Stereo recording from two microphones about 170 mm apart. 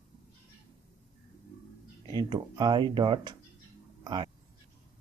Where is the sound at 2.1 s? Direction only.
25° right (ahead or behind).